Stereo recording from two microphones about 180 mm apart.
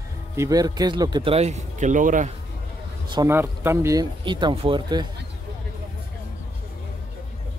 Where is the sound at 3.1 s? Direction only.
20° right (ahead or behind).